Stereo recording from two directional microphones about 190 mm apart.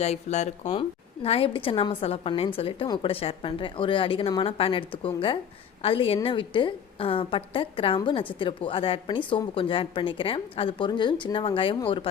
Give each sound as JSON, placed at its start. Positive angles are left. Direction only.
{"t": 0.0, "sound": "a woman's voice", "side_deg": 35}